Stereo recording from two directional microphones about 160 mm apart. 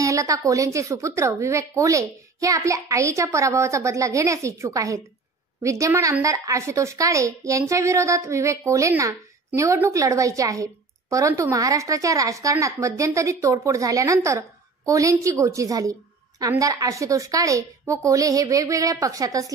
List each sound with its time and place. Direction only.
0.0 s a woman's voice: 20° right (ahead or behind)